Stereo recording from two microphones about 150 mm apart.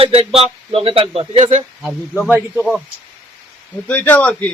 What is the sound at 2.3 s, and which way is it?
Speech, 15° right (ahead or behind).